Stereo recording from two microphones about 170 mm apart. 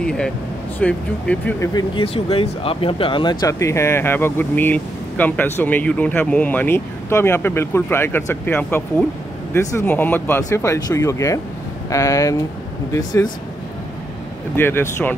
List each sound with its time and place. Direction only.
0.7 s speech: 10° left (ahead or behind)
1.7 s speech: 25° left (ahead or behind)
2.1 s speech: 35° left (ahead or behind)
14.6 s speech: 15° left (ahead or behind)